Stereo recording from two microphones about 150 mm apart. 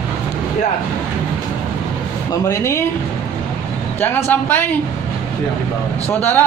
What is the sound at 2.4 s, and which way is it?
Speech, 20° left (ahead or behind).